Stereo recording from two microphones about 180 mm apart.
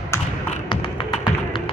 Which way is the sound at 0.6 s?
25° left (ahead or behind).